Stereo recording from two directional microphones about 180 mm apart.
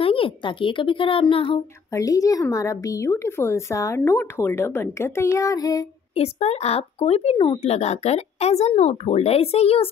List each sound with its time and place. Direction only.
0.0 s a child's voice: 30° left (ahead or behind)
2.0 s a child's voice: 20° left (ahead or behind)
6.1 s speech: 35° left (ahead or behind)